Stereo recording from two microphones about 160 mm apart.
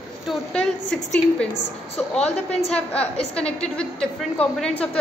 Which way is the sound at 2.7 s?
5° left (ahead or behind).